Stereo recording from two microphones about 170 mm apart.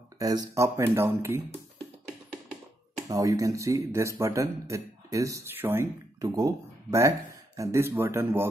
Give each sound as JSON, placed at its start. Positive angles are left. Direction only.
{"t": 0.2, "sound": "speech", "side_deg": -20}
{"t": 3.1, "sound": "speech", "side_deg": -20}